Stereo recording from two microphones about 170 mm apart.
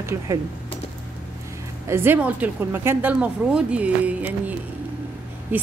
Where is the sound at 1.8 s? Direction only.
15° right (ahead or behind).